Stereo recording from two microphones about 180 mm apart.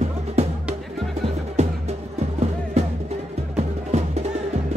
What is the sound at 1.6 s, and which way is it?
Music, 40° right (ahead or behind).